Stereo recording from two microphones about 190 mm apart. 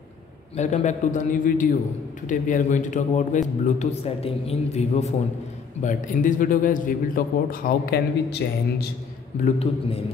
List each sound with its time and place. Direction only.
0.6 s a man's voice: 40° left (ahead or behind); by 8.8 s 55° left (ahead or behind)
9.4 s a man's voice: 30° left (ahead or behind)